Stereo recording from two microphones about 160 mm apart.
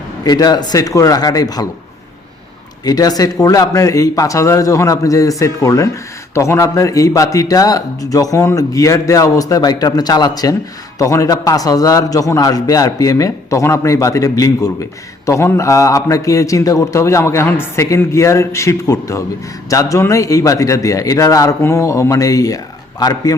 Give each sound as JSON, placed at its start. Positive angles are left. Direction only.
{"t": 0.3, "sound": "speech", "side_deg": 25}
{"t": 2.8, "sound": "speech", "side_deg": 25}